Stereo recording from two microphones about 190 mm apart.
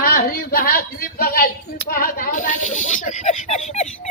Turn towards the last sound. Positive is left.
turn(degrees=35)  # may be behind; listen again after turning